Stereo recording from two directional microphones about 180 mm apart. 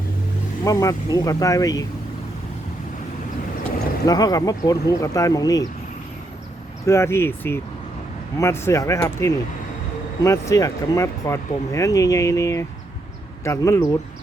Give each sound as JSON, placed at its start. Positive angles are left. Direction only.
{"t": 0.6, "sound": "speech", "side_deg": 20}
{"t": 4.0, "sound": "speech", "side_deg": 20}
{"t": 6.8, "sound": "speech", "side_deg": 15}